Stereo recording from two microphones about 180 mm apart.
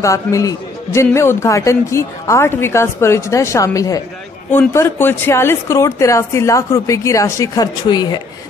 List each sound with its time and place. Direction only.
0.0 s a man's voice: 15° left (ahead or behind)